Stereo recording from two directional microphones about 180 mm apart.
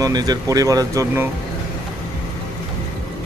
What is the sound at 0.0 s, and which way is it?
Speech, 20° right (ahead or behind).